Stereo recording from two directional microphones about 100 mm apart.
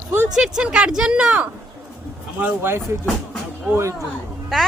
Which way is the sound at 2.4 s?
25° right (ahead or behind).